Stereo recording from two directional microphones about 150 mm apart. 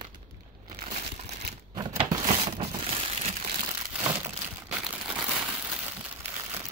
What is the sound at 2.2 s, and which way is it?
Crumpling, 40° right (ahead or behind).